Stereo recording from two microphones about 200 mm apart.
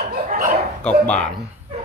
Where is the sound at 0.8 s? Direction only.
5° left (ahead or behind).